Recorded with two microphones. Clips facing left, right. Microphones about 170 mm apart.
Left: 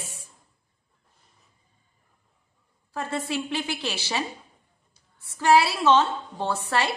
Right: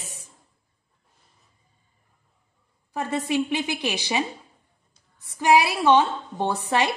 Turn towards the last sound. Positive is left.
turn(degrees=-15)  # may be behind; listen again after turning